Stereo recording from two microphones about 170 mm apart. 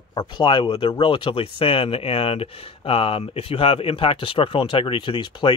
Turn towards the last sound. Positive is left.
turn(degrees=30)  # may be behind; listen again after turning